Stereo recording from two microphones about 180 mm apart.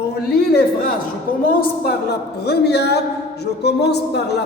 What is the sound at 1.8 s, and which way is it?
A woman's voice, 65° left (ahead or behind).